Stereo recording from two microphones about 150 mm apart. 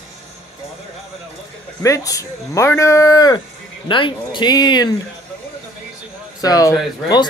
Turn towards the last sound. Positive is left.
turn(degrees=25)  # may be behind; listen again after turning